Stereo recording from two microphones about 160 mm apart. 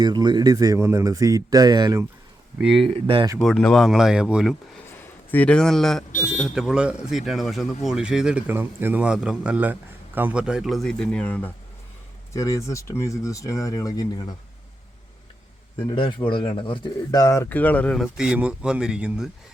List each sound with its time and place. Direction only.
0.0 s speech: 25° right (ahead or behind)
2.6 s speech: 5° right (ahead or behind)
2.9 s speech: 35° right (ahead or behind)
3.3 s speech: 5° left (ahead or behind)
4.9 s a man's voice: 10° left (ahead or behind)
12.3 s speech: 20° left (ahead or behind)
15.9 s speech: 30° left (ahead or behind); by 19.3 s 5° right (ahead or behind)